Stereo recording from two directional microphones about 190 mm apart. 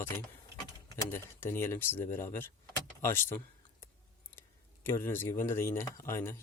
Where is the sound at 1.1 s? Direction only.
10° left (ahead or behind).